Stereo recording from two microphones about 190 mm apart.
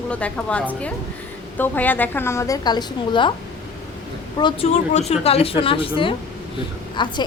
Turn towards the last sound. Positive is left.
turn(degrees=25)  # may be behind; listen again after turning